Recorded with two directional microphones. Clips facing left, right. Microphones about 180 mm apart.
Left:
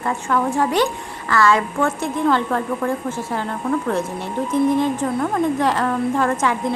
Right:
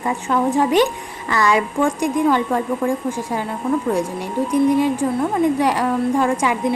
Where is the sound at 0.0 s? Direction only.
15° right (ahead or behind).